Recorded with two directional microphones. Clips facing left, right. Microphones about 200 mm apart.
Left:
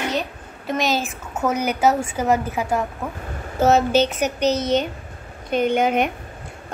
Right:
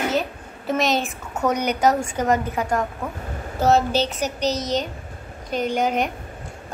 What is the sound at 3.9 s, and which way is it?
A woman's voice, 60° left (ahead or behind).